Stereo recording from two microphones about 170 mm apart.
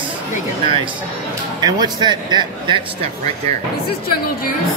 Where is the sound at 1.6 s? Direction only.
25° right (ahead or behind).